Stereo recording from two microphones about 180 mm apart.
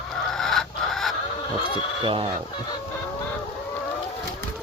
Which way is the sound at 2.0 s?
30° right (ahead or behind).